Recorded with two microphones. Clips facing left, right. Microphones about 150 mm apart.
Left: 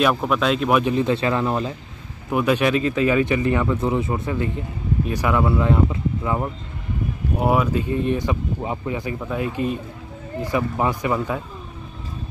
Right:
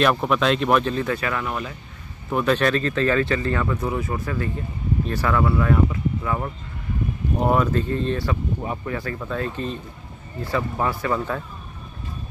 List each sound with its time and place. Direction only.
0.0 s speech: centre (ahead or behind)
0.8 s speech: 20° left (ahead or behind)
2.3 s speech: 10° left (ahead or behind)
7.3 s speech: 10° left (ahead or behind)